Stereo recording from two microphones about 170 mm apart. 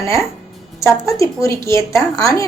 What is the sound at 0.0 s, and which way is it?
A woman's voice, 15° left (ahead or behind).